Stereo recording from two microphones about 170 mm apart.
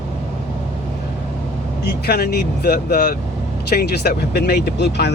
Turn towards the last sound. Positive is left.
turn(degrees=80)